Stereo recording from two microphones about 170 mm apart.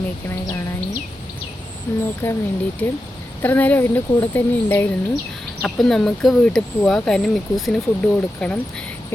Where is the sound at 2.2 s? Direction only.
10° left (ahead or behind).